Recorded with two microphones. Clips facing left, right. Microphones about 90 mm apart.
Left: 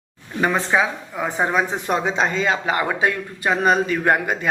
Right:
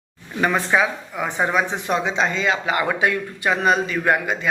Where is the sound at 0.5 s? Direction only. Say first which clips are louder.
Even; 25° left (ahead or behind).